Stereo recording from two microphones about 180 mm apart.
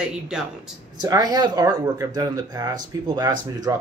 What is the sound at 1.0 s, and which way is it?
Speech, 20° right (ahead or behind).